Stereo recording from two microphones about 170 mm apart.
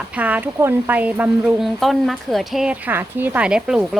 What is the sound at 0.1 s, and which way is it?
Speech, 10° right (ahead or behind).